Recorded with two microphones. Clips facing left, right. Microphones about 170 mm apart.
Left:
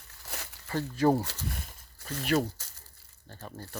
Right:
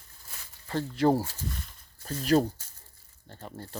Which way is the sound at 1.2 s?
75° left (ahead or behind).